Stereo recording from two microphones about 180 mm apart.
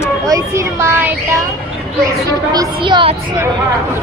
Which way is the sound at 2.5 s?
25° right (ahead or behind).